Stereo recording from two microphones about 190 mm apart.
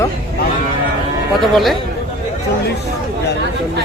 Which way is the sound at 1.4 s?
Centre (ahead or behind).